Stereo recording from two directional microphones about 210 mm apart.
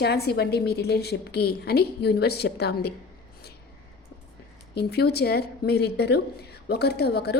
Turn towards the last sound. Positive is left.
turn(degrees=50)  # may be behind; listen again after turning